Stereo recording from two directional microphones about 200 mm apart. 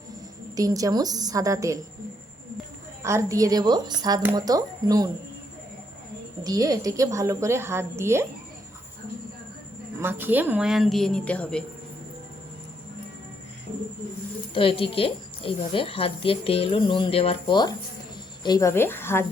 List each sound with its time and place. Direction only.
0.5 s a woman's voice: 15° right (ahead or behind)
3.0 s a woman's voice: 15° right (ahead or behind)
6.4 s a woman's voice: 20° right (ahead or behind)
10.0 s a woman's voice: 10° right (ahead or behind); by 11.6 s 5° left (ahead or behind)
14.5 s a woman's voice: 25° left (ahead or behind); by 19.2 s 10° left (ahead or behind)